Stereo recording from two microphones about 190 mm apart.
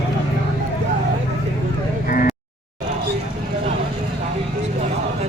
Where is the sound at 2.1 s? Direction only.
45° left (ahead or behind).